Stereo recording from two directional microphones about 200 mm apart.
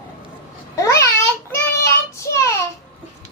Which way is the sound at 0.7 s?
15° left (ahead or behind).